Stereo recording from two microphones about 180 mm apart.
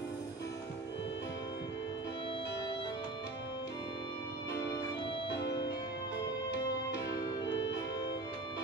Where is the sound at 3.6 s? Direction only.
20° left (ahead or behind).